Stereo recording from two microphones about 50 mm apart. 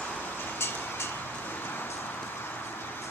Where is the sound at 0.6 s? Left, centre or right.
Left.